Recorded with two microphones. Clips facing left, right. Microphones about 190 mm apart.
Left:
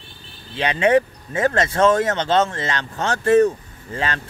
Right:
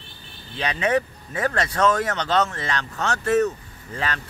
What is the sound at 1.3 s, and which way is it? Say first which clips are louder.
Speech: left 5 dB; 25° left (ahead or behind).